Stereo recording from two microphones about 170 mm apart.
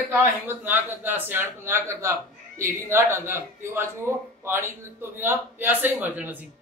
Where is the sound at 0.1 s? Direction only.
10° right (ahead or behind).